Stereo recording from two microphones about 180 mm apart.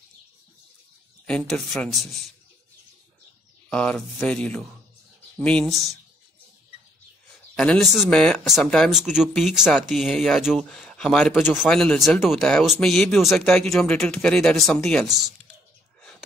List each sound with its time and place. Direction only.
1.2 s speech: 5° left (ahead or behind)
3.7 s speech: 5° left (ahead or behind)
7.5 s speech: 5° left (ahead or behind)
16.0 s a sound: centre (ahead or behind)